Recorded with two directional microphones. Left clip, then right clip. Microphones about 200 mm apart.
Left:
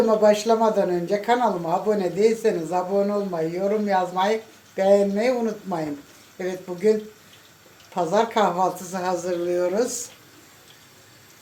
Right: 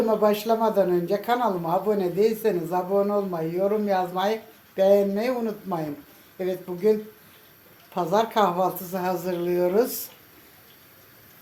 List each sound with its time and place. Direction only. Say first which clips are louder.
0.1 s speech: left 4 dB; 5° right (ahead or behind)
7.9 s a woman's voice: left 1 dB; 10° right (ahead or behind)
9.2 s speech: left 1 dB; 30° right (ahead or behind)